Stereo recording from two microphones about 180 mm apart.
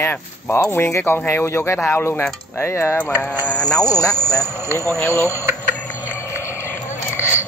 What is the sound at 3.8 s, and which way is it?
Speech, 20° left (ahead or behind).